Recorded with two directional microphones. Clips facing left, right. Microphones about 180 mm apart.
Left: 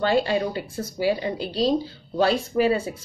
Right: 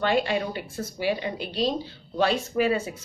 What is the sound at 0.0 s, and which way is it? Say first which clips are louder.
A woman's voice: left 3 dB; 30° left (ahead or behind).